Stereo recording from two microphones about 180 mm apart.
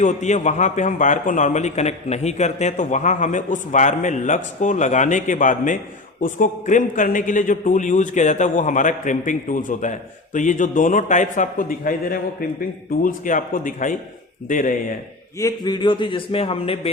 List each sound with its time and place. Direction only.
0.0 s a man's voice: 40° left (ahead or behind)
15.4 s a man's voice: 20° left (ahead or behind)